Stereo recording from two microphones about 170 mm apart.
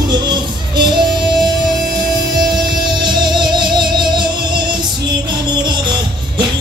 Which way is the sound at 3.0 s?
25° right (ahead or behind).